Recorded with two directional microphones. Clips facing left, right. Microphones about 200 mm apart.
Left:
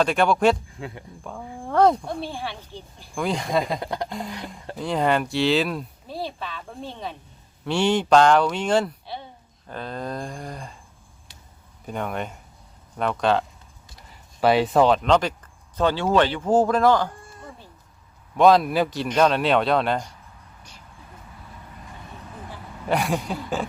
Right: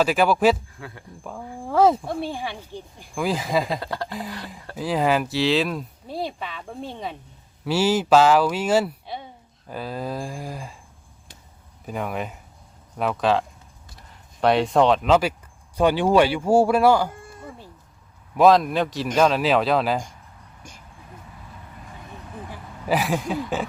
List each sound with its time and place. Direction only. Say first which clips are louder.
0.0 s speech: right 1 dB; 5° right (ahead or behind)
0.8 s speech: left 4 dB; 20° left (ahead or behind)
1.2 s speech: right 1 dB; centre (ahead or behind)
3.2 s speech: right 1 dB; 5° right (ahead or behind)
3.8 s speech: left 1 dB; 20° left (ahead or behind)
4.8 s speech: right 1 dB; 5° right (ahead or behind)
6.1 s speech: right 3 dB; 15° right (ahead or behind)
11.9 s speech: even; centre (ahead or behind)
14.4 s speech: even; centre (ahead or behind)
22.9 s speech: right 1 dB; centre (ahead or behind)